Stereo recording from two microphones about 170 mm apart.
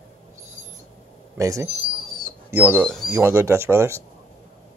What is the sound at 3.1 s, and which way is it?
Speech, 15° right (ahead or behind).